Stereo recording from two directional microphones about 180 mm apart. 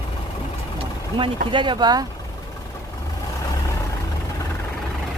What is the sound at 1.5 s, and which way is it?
Speech, 25° right (ahead or behind).